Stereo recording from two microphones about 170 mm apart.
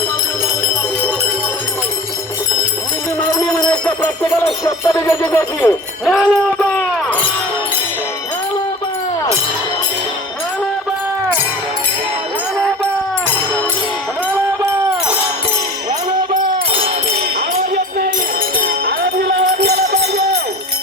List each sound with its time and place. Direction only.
3.7 s jingle bell: 5° left (ahead or behind)
4.9 s wind chime: 15° left (ahead or behind)
6.1 s speech: 5° left (ahead or behind)
12.5 s music: 5° left (ahead or behind)
18.6 s music: 70° right (ahead or behind)